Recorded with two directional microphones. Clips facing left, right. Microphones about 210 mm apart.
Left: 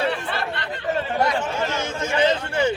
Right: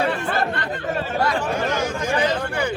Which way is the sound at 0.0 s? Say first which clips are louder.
Right 3 dB; 45° right (ahead or behind).